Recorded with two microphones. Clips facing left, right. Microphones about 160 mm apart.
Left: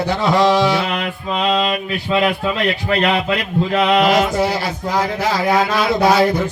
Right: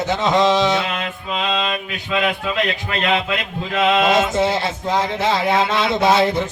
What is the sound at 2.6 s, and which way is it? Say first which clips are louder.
Mantra: left 4 dB; 20° right (ahead or behind).